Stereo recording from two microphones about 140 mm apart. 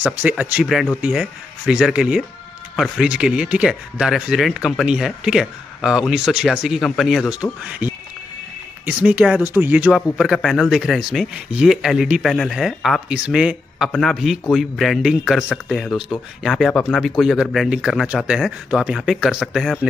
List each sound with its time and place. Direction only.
0.0 s speech: 10° right (ahead or behind)
0.7 s speech: centre (ahead or behind)
7.8 s a sound: 15° right (ahead or behind)
8.8 s speech: 10° right (ahead or behind)
10.1 s speech: centre (ahead or behind)